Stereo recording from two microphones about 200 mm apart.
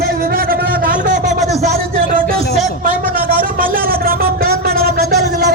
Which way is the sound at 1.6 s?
50° right (ahead or behind).